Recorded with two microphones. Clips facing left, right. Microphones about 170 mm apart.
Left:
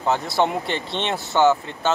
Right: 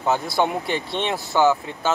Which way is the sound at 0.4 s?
5° right (ahead or behind).